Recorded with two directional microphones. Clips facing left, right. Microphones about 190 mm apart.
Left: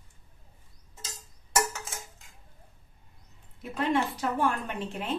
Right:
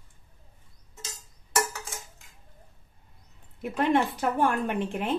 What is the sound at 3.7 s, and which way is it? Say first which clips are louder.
A woman's voice: right 3 dB; 55° right (ahead or behind).